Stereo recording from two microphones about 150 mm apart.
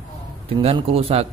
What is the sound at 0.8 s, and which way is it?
Speech, 40° right (ahead or behind).